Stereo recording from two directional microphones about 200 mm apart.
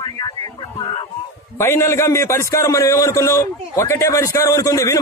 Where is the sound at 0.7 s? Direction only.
20° left (ahead or behind).